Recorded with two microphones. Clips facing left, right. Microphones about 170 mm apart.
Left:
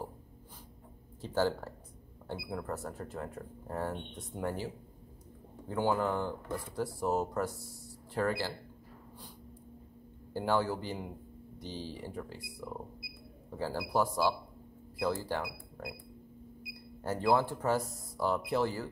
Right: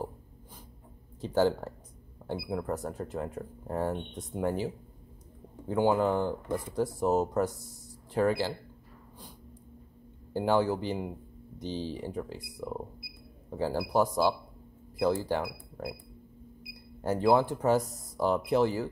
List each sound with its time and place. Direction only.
1.2 s speech: 15° right (ahead or behind)
5.7 s speech: 20° right (ahead or behind)
10.3 s speech: 20° right (ahead or behind)
17.0 s speech: 15° right (ahead or behind)